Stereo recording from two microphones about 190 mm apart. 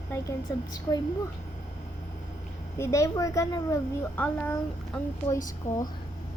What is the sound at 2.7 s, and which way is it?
A child's voice, 15° left (ahead or behind).